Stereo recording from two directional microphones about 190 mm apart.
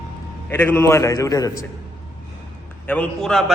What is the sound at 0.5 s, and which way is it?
A man's voice, 10° left (ahead or behind).